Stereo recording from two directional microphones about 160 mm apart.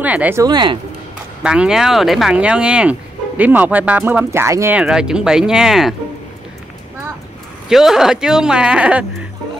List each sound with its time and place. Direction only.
0.0 s speech: 10° right (ahead or behind)
0.4 s speech: 25° right (ahead or behind)
1.4 s speech: 5° right (ahead or behind)
4.8 s speech: 5° right (ahead or behind)
7.7 s speech: centre (ahead or behind)